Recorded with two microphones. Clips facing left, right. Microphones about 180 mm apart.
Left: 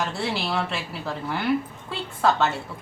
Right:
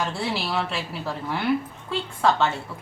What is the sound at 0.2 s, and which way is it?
A woman's voice, centre (ahead or behind).